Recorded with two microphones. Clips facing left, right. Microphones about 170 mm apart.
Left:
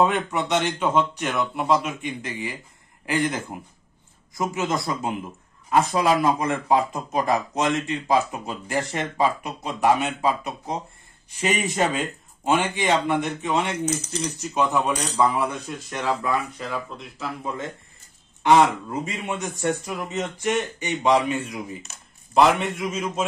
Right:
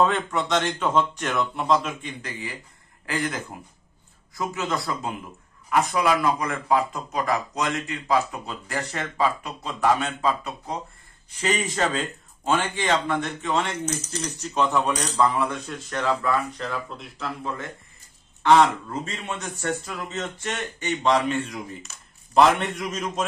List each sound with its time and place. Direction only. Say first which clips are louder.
0.0 s a man's voice: left 1 dB; 15° left (ahead or behind)
18.4 s a man's voice: even; 15° left (ahead or behind)